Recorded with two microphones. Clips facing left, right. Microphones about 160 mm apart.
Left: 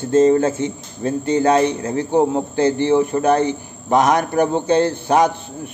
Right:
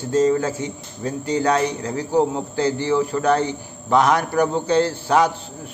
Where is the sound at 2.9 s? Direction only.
20° left (ahead or behind).